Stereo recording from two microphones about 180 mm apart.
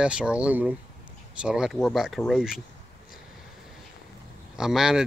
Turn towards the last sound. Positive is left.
turn(degrees=-5)  # may be behind; listen again after turning